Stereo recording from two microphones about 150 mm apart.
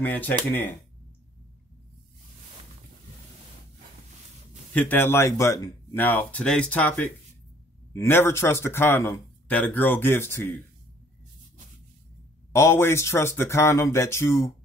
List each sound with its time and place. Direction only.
0.0 s speech: 10° left (ahead or behind)
4.7 s speech: 15° left (ahead or behind)
12.5 s speech: 15° left (ahead or behind)